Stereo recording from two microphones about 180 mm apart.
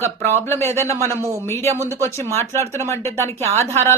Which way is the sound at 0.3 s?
15° left (ahead or behind).